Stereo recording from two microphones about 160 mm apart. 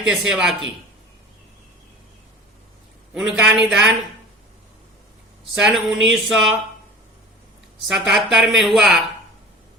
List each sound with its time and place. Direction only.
0.0 s a woman's voice: 5° right (ahead or behind)
3.2 s a woman's voice: 5° right (ahead or behind)
5.5 s a woman's voice: 5° right (ahead or behind)
7.8 s a woman's voice: centre (ahead or behind)